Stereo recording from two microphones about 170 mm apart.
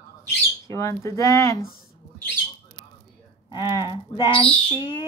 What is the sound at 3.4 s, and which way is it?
Speech, 25° left (ahead or behind).